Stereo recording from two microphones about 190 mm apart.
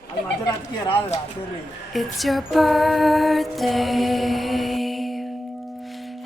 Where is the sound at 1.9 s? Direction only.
Centre (ahead or behind).